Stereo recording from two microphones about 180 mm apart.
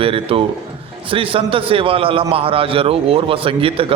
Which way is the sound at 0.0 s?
30° right (ahead or behind).